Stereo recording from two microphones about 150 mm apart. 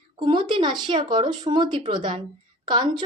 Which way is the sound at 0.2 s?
35° right (ahead or behind).